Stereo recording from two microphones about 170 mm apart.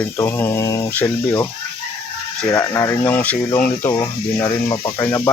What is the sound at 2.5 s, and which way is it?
Speech, 15° left (ahead or behind).